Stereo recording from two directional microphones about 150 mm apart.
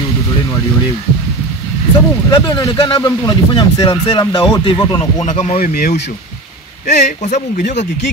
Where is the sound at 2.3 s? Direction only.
25° left (ahead or behind).